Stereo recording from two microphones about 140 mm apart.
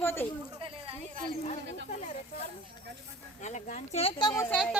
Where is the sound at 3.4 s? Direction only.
55° left (ahead or behind).